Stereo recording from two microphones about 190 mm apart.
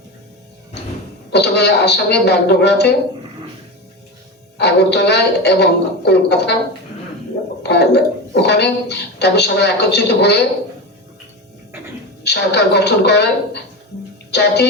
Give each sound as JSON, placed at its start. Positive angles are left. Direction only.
{"t": 1.3, "sound": "a woman's voice", "side_deg": 60}
{"t": 4.5, "sound": "a woman's voice", "side_deg": 60}
{"t": 7.6, "sound": "a woman's voice", "side_deg": 60}
{"t": 12.2, "sound": "a woman's voice", "side_deg": 60}